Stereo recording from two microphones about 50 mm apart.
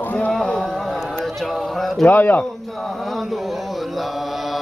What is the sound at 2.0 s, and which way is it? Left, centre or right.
Speech, left.